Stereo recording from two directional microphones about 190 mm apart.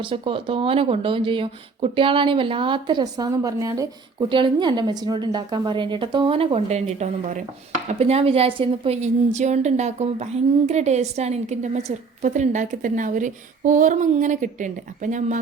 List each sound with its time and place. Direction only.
0.0 s a woman's voice: 30° right (ahead or behind)